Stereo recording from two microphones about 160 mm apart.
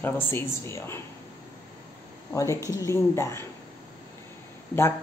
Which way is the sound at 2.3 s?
20° left (ahead or behind).